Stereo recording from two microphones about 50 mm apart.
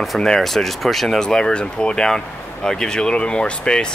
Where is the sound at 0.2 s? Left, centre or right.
Centre.